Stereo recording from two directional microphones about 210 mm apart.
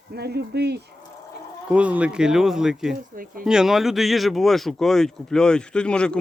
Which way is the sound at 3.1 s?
40° right (ahead or behind).